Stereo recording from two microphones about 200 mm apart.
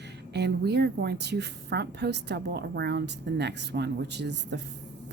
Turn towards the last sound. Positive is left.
turn(degrees=-60)  # may be behind; listen again after turning